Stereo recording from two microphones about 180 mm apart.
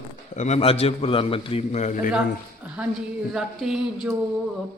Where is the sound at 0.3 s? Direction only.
40° left (ahead or behind).